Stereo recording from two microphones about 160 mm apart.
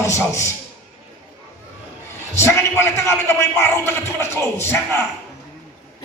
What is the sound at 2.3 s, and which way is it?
A man's voice, 15° left (ahead or behind).